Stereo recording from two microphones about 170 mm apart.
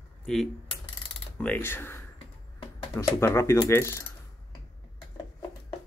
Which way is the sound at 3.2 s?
15° left (ahead or behind).